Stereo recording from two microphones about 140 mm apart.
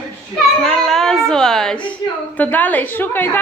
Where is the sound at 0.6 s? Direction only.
5° left (ahead or behind).